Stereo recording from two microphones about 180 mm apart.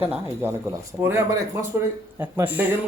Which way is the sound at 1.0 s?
15° right (ahead or behind).